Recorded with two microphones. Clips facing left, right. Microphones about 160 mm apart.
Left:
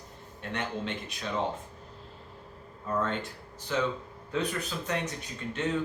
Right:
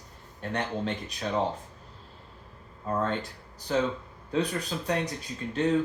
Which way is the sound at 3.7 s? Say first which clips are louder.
Right 3 dB; 35° right (ahead or behind).